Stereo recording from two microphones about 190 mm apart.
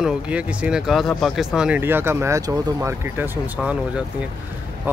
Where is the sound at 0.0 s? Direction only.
5° right (ahead or behind).